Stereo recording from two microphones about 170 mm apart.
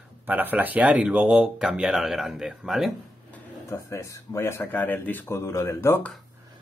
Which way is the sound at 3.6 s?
15° left (ahead or behind).